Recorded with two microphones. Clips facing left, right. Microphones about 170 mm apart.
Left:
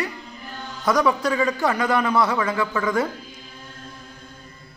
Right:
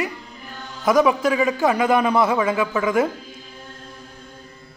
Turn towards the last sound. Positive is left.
turn(degrees=-15)  # may be behind; listen again after turning